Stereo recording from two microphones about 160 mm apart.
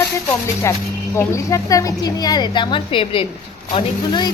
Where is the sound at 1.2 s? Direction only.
20° left (ahead or behind).